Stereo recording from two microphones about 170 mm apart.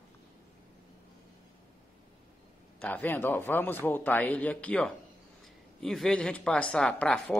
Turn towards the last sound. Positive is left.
turn(degrees=5)  # may be behind; listen again after turning